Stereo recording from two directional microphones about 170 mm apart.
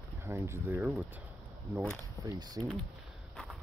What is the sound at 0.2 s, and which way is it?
Speech, 15° right (ahead or behind).